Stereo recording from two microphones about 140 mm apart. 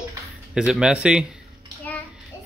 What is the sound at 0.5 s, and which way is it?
Speech, 5° right (ahead or behind).